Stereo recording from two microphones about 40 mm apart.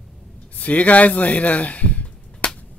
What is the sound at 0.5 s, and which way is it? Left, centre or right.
Speech, left.